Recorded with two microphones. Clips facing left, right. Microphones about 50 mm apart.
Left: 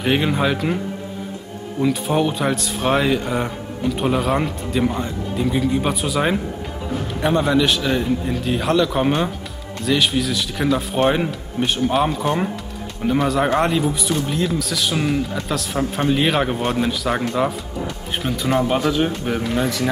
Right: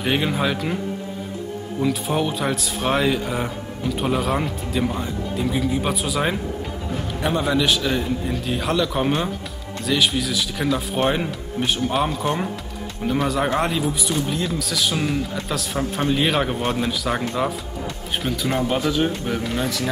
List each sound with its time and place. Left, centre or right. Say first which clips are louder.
0.0 s speech: left 3 dB; centre
1.8 s a man's voice: left 3 dB; centre